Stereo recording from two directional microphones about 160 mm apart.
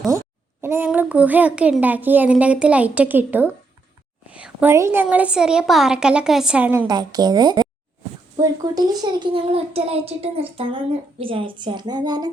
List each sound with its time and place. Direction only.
0.6 s a woman's voice: 15° right (ahead or behind)
6.8 s a woman's voice: 25° right (ahead or behind)